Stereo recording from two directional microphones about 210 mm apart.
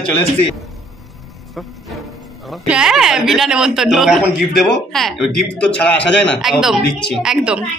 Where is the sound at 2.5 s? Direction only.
5° right (ahead or behind).